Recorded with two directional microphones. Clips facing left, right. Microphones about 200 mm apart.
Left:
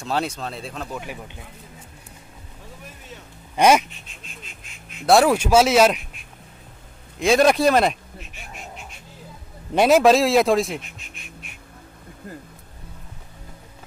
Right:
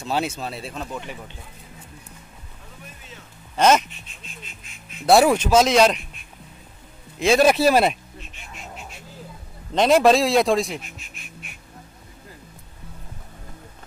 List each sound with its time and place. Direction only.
0.0 s speech: 5° right (ahead or behind)
0.8 s speech: 10° left (ahead or behind)
3.5 s speech: 10° left (ahead or behind)
5.0 s speech: centre (ahead or behind)
7.2 s speech: centre (ahead or behind)
9.8 s speech: 5° left (ahead or behind)